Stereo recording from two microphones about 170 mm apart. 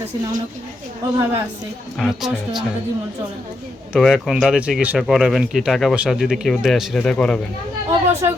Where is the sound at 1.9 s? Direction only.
Centre (ahead or behind).